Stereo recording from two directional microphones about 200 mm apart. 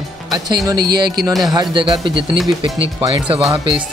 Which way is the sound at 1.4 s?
20° right (ahead or behind).